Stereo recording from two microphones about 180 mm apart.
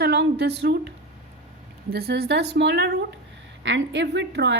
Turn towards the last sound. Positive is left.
turn(degrees=-80)